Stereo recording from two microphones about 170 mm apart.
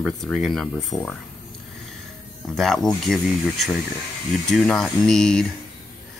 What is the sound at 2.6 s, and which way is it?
Speech, centre (ahead or behind).